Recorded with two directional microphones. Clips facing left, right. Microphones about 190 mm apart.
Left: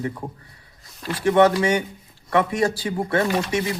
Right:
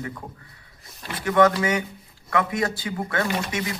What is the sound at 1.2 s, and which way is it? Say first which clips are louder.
Speech: left 3 dB; 30° left (ahead or behind).